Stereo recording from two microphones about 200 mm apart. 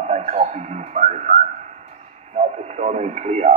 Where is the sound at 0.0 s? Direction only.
35° right (ahead or behind).